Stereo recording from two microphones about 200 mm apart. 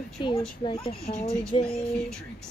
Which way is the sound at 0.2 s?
25° left (ahead or behind).